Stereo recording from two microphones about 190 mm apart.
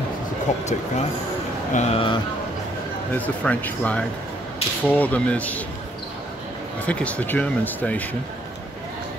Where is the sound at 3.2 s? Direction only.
10° left (ahead or behind).